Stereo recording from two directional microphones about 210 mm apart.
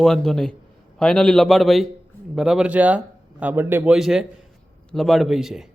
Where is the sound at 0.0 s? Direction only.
Centre (ahead or behind).